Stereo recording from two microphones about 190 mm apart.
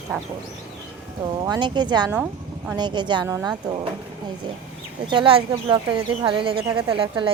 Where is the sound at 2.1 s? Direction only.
10° right (ahead or behind).